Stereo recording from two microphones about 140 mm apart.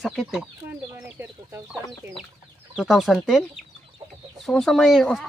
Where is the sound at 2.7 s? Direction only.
Centre (ahead or behind).